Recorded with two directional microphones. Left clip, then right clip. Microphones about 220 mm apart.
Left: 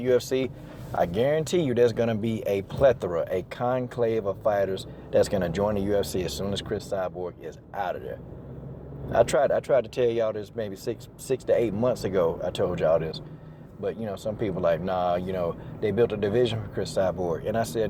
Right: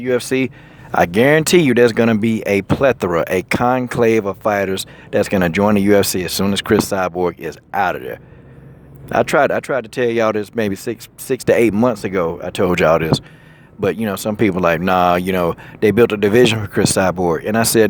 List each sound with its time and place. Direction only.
0.0 s speech: 30° right (ahead or behind)